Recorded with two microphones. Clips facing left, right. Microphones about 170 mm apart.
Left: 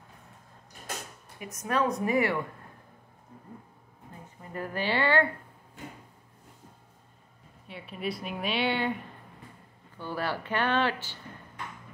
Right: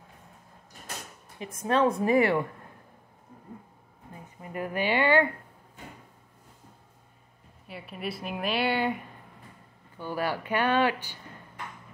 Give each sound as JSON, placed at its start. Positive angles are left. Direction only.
{"t": 1.4, "sound": "a woman's voice", "side_deg": -25}
{"t": 4.4, "sound": "speech", "side_deg": -15}
{"t": 7.6, "sound": "speech", "side_deg": 0}